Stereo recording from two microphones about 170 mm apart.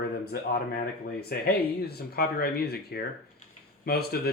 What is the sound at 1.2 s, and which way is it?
Speech, 65° left (ahead or behind).